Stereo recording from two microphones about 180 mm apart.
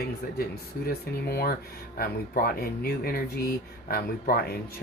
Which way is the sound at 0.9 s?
60° left (ahead or behind).